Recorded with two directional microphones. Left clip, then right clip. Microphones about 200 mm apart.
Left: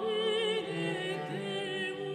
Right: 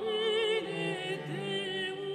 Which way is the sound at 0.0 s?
25° left (ahead or behind).